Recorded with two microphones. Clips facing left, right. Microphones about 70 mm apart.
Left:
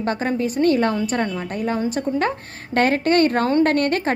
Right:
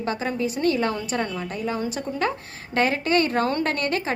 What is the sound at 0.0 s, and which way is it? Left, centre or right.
A woman's voice, left.